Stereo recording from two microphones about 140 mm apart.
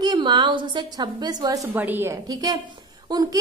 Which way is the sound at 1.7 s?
15° right (ahead or behind).